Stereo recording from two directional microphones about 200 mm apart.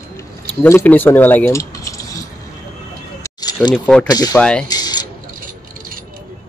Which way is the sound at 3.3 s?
20° left (ahead or behind).